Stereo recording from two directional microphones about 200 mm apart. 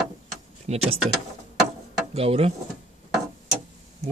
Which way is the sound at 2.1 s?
30° right (ahead or behind).